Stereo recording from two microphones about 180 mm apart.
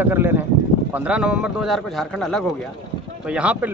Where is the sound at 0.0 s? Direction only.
10° right (ahead or behind).